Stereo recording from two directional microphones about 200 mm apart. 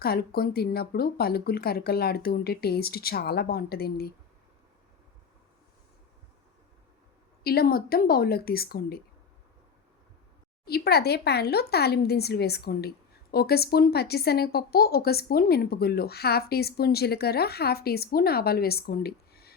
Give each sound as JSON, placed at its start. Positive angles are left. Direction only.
{"t": 0.0, "sound": "speech", "side_deg": 50}
{"t": 7.4, "sound": "speech", "side_deg": 50}
{"t": 10.7, "sound": "speech", "side_deg": 50}